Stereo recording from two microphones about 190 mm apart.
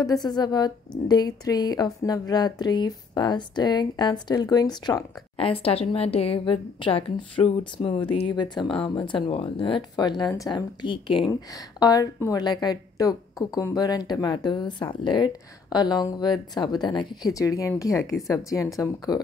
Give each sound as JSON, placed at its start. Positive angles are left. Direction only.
{"t": 0.0, "sound": "a woman's voice", "side_deg": 20}